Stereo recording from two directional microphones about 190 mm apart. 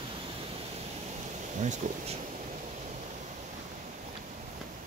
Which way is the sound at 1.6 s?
40° right (ahead or behind).